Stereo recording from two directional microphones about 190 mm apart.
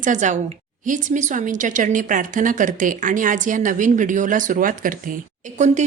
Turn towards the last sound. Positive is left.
turn(degrees=-40)  # may be behind; listen again after turning